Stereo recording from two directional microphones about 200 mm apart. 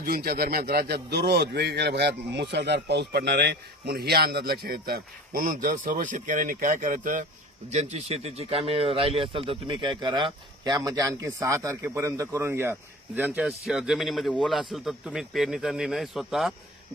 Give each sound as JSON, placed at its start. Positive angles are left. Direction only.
{"t": 0.0, "sound": "a man's voice", "side_deg": -50}